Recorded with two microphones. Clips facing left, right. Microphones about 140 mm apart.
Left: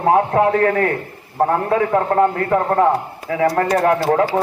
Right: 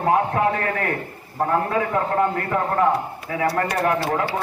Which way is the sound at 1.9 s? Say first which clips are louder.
Left 6 dB; 40° left (ahead or behind).